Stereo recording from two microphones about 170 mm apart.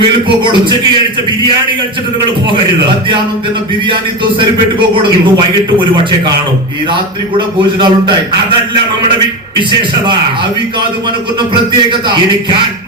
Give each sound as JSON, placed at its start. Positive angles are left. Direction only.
{"t": 5.9, "sound": "a man's voice", "side_deg": -25}
{"t": 7.3, "sound": "a man's voice", "side_deg": -25}